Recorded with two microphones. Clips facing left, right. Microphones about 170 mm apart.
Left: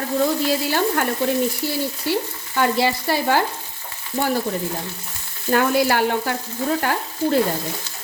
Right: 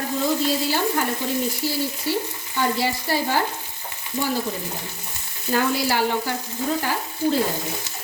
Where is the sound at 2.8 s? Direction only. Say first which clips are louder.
Left 3 dB; 65° left (ahead or behind).